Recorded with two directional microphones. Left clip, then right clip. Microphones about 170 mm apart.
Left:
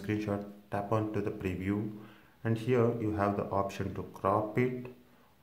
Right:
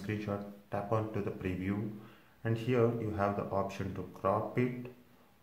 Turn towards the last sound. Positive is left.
turn(degrees=25)  # may be behind; listen again after turning